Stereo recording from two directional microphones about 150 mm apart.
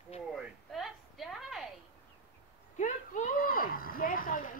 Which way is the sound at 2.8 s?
55° left (ahead or behind).